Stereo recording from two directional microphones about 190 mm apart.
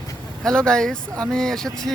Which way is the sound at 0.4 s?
5° left (ahead or behind).